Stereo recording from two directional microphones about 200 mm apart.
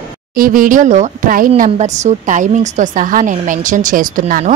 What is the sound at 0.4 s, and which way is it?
Speech, 45° right (ahead or behind).